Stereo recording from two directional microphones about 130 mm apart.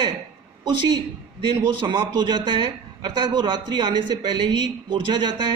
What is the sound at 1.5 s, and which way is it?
Speech, 40° right (ahead or behind).